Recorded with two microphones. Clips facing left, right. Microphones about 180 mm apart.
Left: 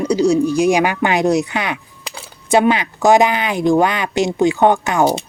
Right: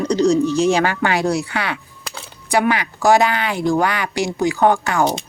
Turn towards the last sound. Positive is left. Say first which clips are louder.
# left 2 dB
turn(degrees=20)  # may be behind; listen again after turning